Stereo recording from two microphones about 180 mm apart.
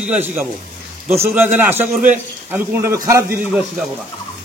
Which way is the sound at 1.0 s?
15° right (ahead or behind).